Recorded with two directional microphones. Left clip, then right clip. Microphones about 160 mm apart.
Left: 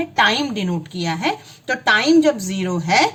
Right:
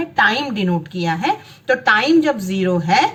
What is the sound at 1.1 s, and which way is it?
Speech, 25° left (ahead or behind).